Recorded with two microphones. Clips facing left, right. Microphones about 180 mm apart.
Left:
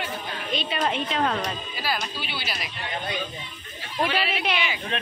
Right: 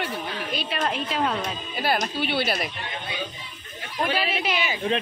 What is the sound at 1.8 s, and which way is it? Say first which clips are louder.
Speech: right 6 dB; 55° right (ahead or behind).